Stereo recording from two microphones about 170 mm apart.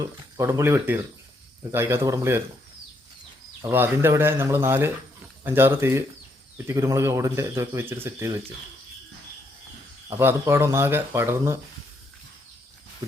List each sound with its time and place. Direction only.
0.0 s speech: 20° right (ahead or behind)
3.6 s speech: 15° right (ahead or behind)
10.1 s speech: 15° right (ahead or behind)